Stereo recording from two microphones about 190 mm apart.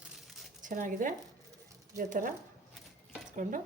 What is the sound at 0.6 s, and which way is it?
A woman's voice, 45° right (ahead or behind).